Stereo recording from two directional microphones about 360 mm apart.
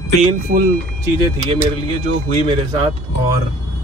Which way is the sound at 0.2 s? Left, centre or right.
Centre.